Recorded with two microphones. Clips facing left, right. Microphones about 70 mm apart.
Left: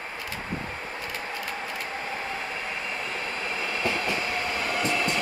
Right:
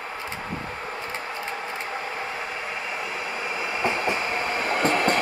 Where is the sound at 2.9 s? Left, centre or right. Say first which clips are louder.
Right 2 dB; centre; by 5.2 s right.